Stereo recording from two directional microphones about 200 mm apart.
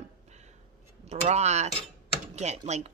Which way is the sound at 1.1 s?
35° right (ahead or behind).